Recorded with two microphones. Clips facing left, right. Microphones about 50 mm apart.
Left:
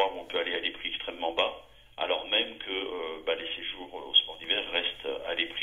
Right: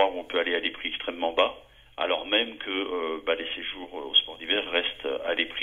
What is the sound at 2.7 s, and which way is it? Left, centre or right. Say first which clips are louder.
Speech: right 5 dB; right.